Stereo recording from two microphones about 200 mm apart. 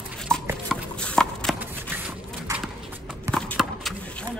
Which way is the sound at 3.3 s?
5° left (ahead or behind).